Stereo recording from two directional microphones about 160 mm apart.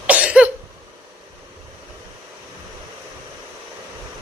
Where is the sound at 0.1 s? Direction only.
10° right (ahead or behind).